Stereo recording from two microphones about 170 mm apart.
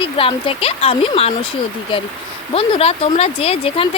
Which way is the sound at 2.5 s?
35° left (ahead or behind).